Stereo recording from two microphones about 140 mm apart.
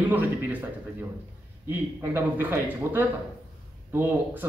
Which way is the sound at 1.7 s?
15° right (ahead or behind).